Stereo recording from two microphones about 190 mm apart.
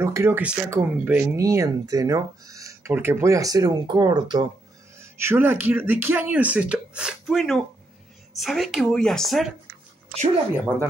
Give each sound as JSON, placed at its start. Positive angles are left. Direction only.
{"t": 0.0, "sound": "speech", "side_deg": -15}